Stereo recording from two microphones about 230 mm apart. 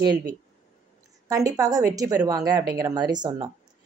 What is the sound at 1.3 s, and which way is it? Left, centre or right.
A woman's voice, centre.